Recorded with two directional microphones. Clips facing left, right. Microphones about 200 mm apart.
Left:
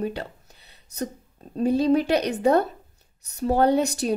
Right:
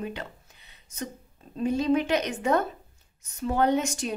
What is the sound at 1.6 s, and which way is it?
A woman's voice, 35° left (ahead or behind).